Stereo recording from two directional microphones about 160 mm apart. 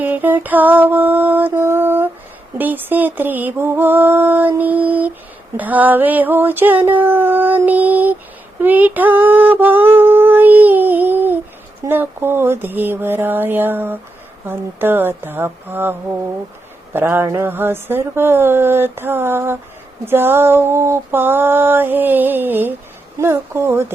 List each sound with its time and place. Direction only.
0.0 s mantra: 10° right (ahead or behind)
2.6 s female singing: 10° right (ahead or behind)